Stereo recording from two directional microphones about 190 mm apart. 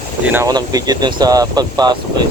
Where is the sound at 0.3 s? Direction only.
15° right (ahead or behind).